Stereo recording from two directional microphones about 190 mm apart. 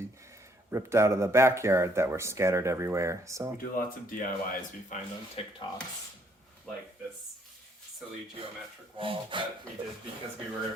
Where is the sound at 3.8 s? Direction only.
45° left (ahead or behind).